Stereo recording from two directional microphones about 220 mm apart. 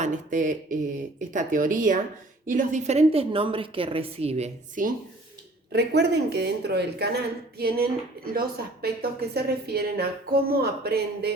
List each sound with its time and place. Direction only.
0.0 s a sound: 35° right (ahead or behind)
2.5 s a woman's voice: 35° right (ahead or behind)
5.7 s speech: 50° right (ahead or behind)